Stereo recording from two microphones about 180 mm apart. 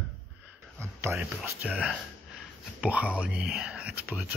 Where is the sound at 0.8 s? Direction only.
15° right (ahead or behind).